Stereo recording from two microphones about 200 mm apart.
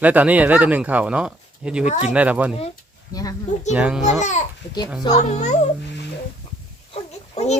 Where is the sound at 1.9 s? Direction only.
35° left (ahead or behind).